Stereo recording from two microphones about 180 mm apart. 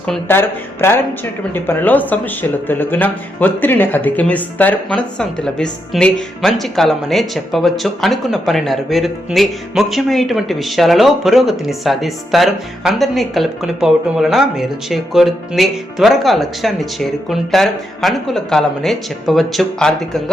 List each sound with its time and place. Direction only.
0.0 s speech: 10° left (ahead or behind)